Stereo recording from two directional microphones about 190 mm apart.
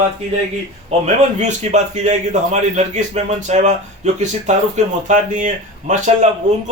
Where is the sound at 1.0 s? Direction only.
40° right (ahead or behind).